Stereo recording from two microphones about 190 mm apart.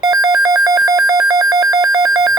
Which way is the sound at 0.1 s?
20° right (ahead or behind).